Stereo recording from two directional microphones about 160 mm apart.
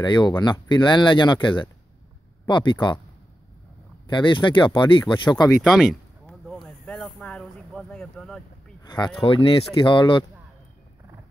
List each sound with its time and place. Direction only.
0.0 s speech: 25° left (ahead or behind)
4.1 s speech: 30° left (ahead or behind)
5.6 s a sound: centre (ahead or behind)
8.8 s speech: 30° left (ahead or behind)